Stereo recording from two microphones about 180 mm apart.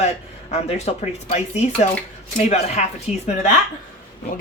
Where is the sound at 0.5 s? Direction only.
35° left (ahead or behind).